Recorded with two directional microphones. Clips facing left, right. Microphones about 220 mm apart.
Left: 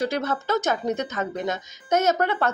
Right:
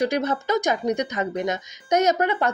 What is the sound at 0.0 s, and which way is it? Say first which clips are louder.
Speech: right 3 dB; 15° right (ahead or behind).